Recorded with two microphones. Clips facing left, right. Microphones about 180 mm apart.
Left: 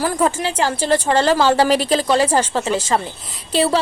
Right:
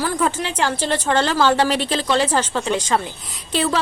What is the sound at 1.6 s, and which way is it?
Speech, 40° left (ahead or behind).